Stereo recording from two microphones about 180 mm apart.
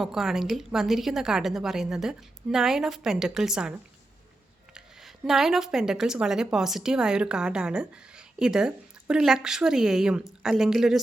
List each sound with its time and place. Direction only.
0.0 s speech: centre (ahead or behind)